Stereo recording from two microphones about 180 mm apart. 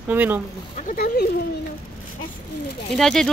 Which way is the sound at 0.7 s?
50° left (ahead or behind).